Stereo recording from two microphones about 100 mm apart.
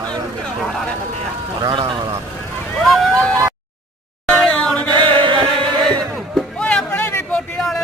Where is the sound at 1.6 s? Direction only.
50° right (ahead or behind).